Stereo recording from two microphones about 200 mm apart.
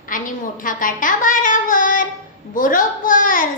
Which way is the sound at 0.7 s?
40° left (ahead or behind).